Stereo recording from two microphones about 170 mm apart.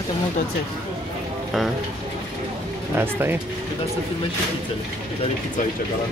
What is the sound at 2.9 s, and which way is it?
Speech, 15° right (ahead or behind).